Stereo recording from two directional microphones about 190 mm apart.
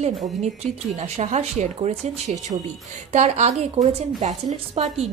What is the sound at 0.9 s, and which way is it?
A woman's voice, 35° right (ahead or behind).